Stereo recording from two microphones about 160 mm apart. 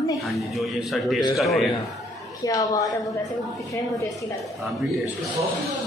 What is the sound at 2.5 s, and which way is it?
Speech, 25° left (ahead or behind).